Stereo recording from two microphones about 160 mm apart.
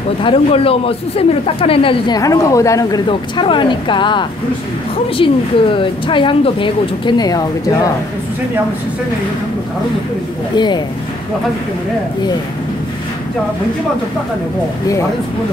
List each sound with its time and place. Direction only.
0.2 s a woman's voice: 35° left (ahead or behind)
10.5 s speech: 25° left (ahead or behind)